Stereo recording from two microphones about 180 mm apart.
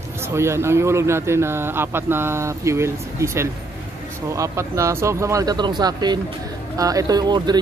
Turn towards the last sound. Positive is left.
turn(degrees=-25)  # may be behind; listen again after turning